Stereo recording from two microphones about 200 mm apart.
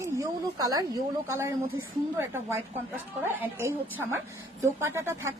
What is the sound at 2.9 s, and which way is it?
A woman's voice, 10° right (ahead or behind).